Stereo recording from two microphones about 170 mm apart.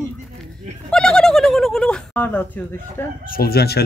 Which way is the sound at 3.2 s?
60° left (ahead or behind).